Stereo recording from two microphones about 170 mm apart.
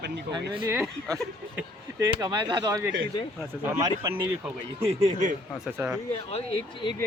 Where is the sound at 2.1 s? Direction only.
25° right (ahead or behind).